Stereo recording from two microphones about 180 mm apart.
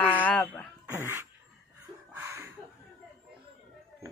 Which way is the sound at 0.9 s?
15° right (ahead or behind).